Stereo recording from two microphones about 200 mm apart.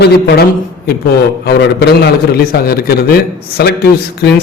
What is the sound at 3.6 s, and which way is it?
Speech, 55° left (ahead or behind).